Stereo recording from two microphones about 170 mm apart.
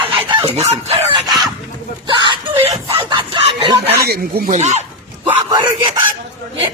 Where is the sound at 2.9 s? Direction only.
30° right (ahead or behind).